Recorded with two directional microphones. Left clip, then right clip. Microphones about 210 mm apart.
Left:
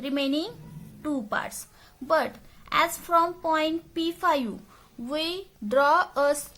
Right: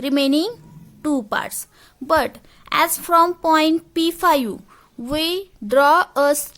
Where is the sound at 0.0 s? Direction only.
50° right (ahead or behind).